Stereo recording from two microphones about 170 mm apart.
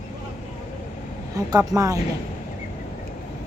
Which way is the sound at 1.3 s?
20° right (ahead or behind).